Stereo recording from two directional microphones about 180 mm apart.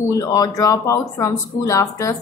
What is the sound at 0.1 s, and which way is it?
A woman's voice, 20° left (ahead or behind).